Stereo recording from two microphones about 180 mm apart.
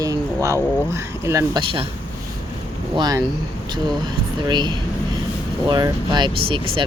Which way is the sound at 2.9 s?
20° right (ahead or behind).